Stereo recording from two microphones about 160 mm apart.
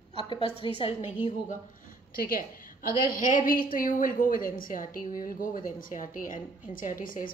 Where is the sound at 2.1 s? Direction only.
65° left (ahead or behind).